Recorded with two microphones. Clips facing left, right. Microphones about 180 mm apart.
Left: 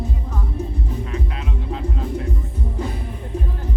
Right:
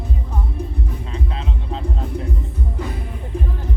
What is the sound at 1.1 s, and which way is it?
Music, 30° right (ahead or behind).